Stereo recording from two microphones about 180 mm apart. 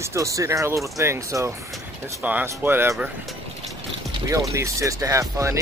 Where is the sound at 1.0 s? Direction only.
15° right (ahead or behind).